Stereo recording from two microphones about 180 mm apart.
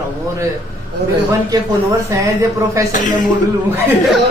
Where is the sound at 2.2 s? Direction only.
20° right (ahead or behind).